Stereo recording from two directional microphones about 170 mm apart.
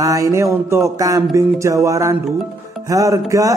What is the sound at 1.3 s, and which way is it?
Speech, 20° right (ahead or behind).